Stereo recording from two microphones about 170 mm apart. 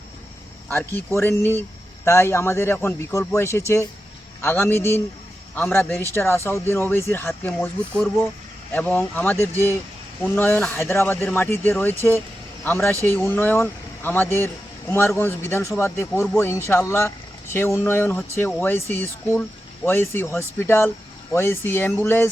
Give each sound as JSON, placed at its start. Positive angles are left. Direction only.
{"t": 0.7, "sound": "speech", "side_deg": 15}